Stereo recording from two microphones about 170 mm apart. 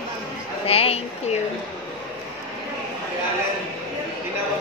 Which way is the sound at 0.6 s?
35° left (ahead or behind).